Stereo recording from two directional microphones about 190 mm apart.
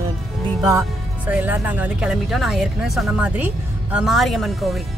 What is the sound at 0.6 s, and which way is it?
Speech, 10° right (ahead or behind).